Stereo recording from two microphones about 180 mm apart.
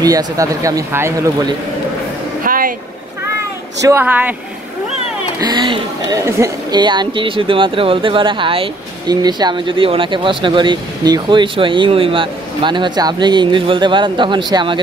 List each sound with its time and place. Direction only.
0.0 s a woman's voice: 20° right (ahead or behind)
2.4 s vehicle: 50° right (ahead or behind)
3.3 s speech: 15° right (ahead or behind)
5.4 s a woman's voice: 25° right (ahead or behind)